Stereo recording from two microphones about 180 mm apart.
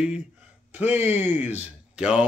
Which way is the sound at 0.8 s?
40° left (ahead or behind).